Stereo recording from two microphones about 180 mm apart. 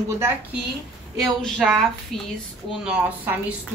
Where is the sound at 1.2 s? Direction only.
Centre (ahead or behind).